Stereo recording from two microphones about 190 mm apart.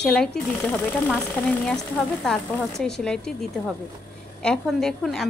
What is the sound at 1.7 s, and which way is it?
A woman's voice, centre (ahead or behind).